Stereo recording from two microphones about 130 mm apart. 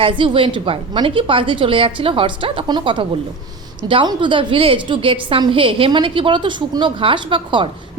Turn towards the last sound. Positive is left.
turn(degrees=-40)  # may be behind; listen again after turning